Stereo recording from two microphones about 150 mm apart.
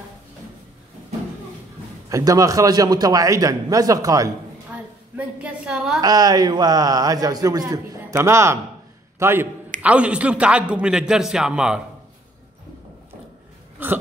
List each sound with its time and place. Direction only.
2.0 s a man's voice: 20° right (ahead or behind)
5.1 s a woman's voice: 5° right (ahead or behind)
5.9 s a man's voice: 25° right (ahead or behind); by 11.8 s 5° right (ahead or behind)
13.8 s a sound: 15° right (ahead or behind)